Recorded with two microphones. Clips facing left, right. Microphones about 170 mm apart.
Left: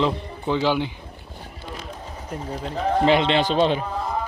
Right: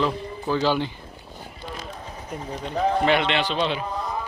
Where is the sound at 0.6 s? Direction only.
15° left (ahead or behind).